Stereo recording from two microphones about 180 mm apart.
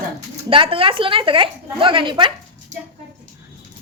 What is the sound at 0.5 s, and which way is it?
A woman's voice, 30° right (ahead or behind).